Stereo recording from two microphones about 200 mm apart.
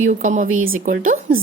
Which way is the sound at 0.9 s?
40° right (ahead or behind).